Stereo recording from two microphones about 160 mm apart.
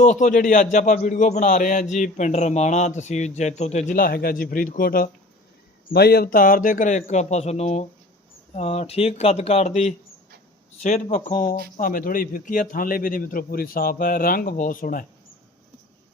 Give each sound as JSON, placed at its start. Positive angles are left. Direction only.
{"t": 0.0, "sound": "a man's voice", "side_deg": 50}
{"t": 3.9, "sound": "a man's voice", "side_deg": 70}
{"t": 5.9, "sound": "a man's voice", "side_deg": 85}
{"t": 10.8, "sound": "a man's voice", "side_deg": 55}